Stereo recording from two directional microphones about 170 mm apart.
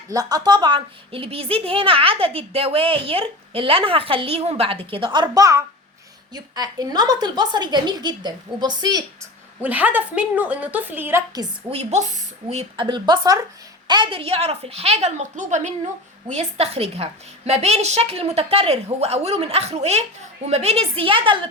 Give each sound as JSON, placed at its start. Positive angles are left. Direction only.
{"t": 0.1, "sound": "a child's voice", "side_deg": -20}
{"t": 9.6, "sound": "a woman's voice", "side_deg": -10}
{"t": 11.7, "sound": "a child's voice", "side_deg": -40}